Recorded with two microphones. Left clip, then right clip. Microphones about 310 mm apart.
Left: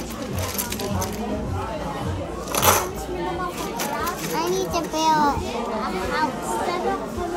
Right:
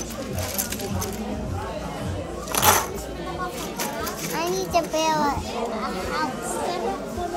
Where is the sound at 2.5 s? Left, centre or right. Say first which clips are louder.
Even; centre.